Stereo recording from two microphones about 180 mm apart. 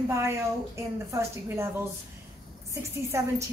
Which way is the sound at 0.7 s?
15° right (ahead or behind).